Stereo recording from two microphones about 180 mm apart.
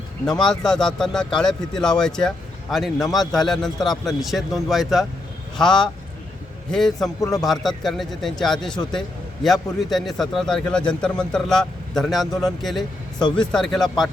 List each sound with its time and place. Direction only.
0.4 s a man's voice: 5° left (ahead or behind)
13.1 s speech: 25° left (ahead or behind)
13.5 s a man's voice: centre (ahead or behind)